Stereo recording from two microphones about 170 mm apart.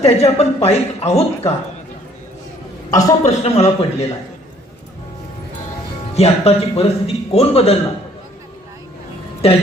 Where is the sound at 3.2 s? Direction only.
40° left (ahead or behind).